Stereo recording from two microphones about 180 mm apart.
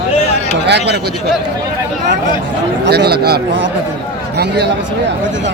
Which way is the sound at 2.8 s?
65° right (ahead or behind).